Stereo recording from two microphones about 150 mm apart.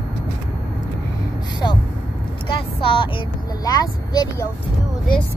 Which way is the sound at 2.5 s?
35° left (ahead or behind).